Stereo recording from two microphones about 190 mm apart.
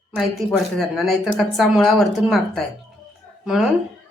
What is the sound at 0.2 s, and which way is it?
A woman's voice, centre (ahead or behind).